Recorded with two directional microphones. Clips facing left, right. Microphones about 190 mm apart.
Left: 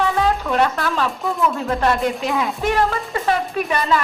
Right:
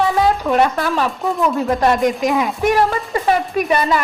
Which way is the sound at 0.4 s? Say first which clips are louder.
Right 3 dB; 15° right (ahead or behind).